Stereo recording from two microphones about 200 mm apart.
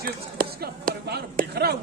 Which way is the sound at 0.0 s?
50° right (ahead or behind).